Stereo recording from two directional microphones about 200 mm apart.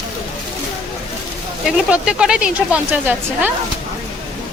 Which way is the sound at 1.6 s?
5° right (ahead or behind).